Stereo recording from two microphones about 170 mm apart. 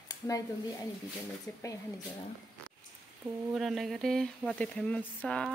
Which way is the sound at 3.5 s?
Centre (ahead or behind).